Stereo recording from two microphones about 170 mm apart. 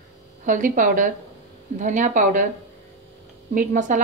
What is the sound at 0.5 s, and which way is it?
Speech, 50° right (ahead or behind).